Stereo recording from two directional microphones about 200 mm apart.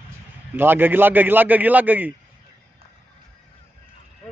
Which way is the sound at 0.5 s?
10° right (ahead or behind).